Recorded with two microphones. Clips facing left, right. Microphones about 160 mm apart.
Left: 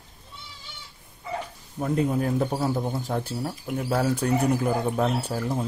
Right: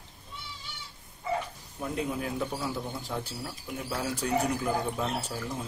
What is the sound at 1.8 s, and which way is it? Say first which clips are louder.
Speech: left 8 dB; 45° left (ahead or behind).